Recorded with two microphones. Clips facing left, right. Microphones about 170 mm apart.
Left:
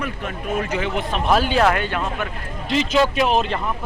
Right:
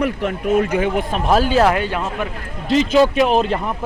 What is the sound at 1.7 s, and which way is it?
Speech, 10° right (ahead or behind).